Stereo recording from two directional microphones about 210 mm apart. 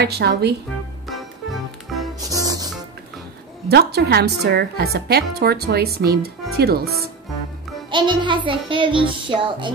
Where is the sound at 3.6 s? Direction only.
50° right (ahead or behind).